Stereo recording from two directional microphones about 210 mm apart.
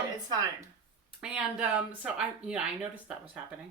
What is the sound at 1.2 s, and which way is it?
Speech, 5° right (ahead or behind).